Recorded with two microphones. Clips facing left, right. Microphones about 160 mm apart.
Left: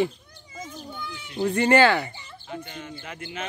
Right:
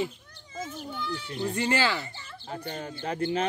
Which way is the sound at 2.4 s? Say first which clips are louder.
Right 1 dB; 40° right (ahead or behind).